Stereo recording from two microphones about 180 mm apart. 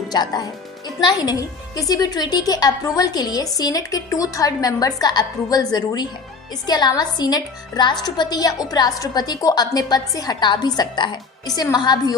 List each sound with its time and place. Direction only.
0.1 s a woman's voice: 20° left (ahead or behind)